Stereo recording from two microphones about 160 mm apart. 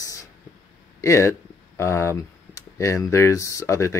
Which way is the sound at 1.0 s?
15° left (ahead or behind).